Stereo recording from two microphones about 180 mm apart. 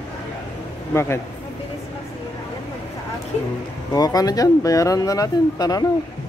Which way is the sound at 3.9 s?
20° left (ahead or behind).